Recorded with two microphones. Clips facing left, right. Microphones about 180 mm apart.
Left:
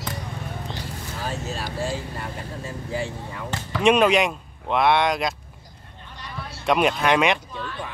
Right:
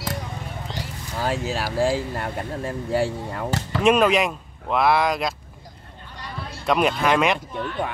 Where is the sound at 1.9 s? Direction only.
55° right (ahead or behind).